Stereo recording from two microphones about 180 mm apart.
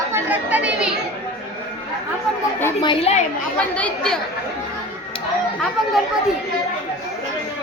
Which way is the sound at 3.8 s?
5° left (ahead or behind).